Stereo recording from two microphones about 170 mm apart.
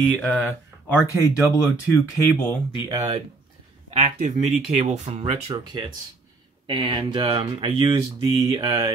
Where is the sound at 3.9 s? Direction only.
40° right (ahead or behind).